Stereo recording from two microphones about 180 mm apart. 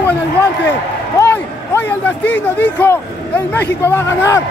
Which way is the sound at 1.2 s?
15° left (ahead or behind).